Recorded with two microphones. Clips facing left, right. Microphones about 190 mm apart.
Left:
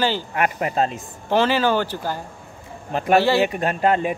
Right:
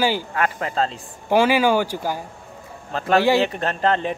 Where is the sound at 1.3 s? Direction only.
10° right (ahead or behind).